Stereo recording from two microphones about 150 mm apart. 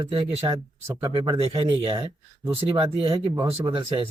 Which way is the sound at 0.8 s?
20° right (ahead or behind).